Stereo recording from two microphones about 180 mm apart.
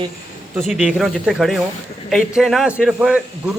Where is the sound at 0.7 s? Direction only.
5° right (ahead or behind).